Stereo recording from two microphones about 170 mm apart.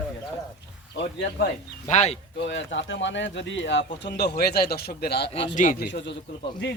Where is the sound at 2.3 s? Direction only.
90° left; by 5.3 s 70° left (ahead or behind).